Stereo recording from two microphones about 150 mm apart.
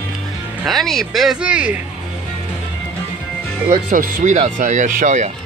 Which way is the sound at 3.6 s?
65° right (ahead or behind).